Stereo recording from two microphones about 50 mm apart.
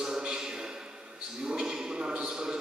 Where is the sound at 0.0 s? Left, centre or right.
Centre.